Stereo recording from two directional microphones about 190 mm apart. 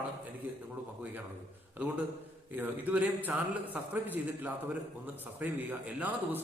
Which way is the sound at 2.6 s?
10° right (ahead or behind).